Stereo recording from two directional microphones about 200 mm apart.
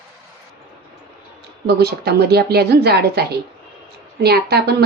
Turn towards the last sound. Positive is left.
turn(degrees=-50)  # may be behind; listen again after turning